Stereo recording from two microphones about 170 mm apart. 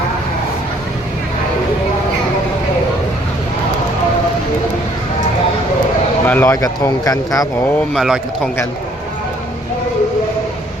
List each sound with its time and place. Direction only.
6.2 s speech: 10° left (ahead or behind)
7.9 s a man's voice: centre (ahead or behind)